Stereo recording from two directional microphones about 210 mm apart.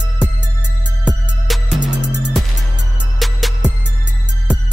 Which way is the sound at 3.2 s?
Centre (ahead or behind).